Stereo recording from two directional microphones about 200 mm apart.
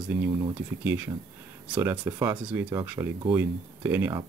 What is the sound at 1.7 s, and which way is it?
Speech, 10° right (ahead or behind).